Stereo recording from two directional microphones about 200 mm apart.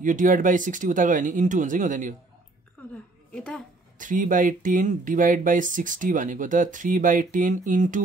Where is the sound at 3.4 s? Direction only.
5° left (ahead or behind).